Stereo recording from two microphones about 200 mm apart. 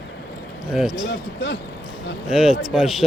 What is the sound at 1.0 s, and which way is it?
Speech, 60° left (ahead or behind).